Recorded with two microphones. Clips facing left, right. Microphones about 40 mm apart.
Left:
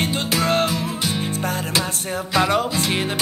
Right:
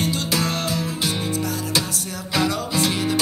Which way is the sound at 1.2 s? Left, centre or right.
Left.